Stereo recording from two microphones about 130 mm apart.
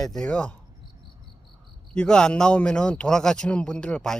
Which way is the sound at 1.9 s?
5° left (ahead or behind).